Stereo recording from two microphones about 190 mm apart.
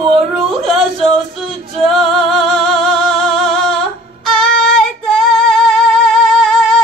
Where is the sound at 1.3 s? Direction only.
Centre (ahead or behind).